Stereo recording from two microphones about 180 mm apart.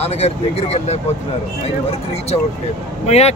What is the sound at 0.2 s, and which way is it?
Speech, 35° left (ahead or behind).